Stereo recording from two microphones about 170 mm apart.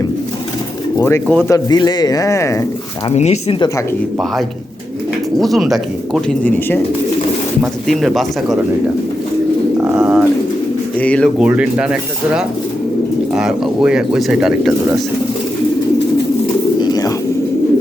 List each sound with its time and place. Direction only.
0.9 s speech: 15° left (ahead or behind)
3.1 s speech: 40° left (ahead or behind)
5.4 s speech: centre (ahead or behind)
9.8 s speech: 10° right (ahead or behind)
10.9 s speech: 5° left (ahead or behind)
11.3 s speech: 5° right (ahead or behind)
16.8 s bird: 25° left (ahead or behind)